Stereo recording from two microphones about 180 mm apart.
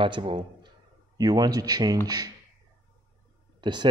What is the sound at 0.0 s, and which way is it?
A man's voice, 30° right (ahead or behind).